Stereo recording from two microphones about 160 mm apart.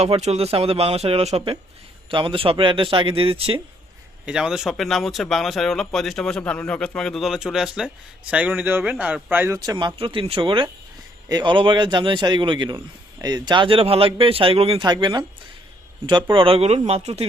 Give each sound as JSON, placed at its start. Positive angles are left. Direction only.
{"t": 0.0, "sound": "a man's voice", "side_deg": -45}
{"t": 4.3, "sound": "speech", "side_deg": -5}
{"t": 9.6, "sound": "a man's voice", "side_deg": -25}
{"t": 16.3, "sound": "a man's voice", "side_deg": -35}